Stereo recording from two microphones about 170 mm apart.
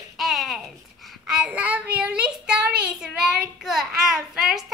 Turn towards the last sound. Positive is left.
turn(degrees=-5)  # may be behind; listen again after turning